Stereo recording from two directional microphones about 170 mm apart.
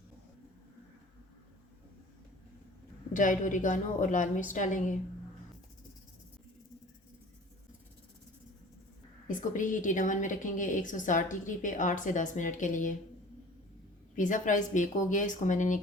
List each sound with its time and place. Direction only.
3.1 s a woman's voice: 50° left (ahead or behind)
9.2 s a woman's voice: 50° left (ahead or behind)
14.2 s a woman's voice: 50° left (ahead or behind)